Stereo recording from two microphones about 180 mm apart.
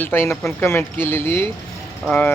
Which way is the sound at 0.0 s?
10° left (ahead or behind).